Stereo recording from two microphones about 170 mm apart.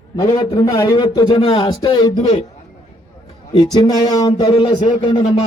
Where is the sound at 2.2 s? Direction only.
35° left (ahead or behind).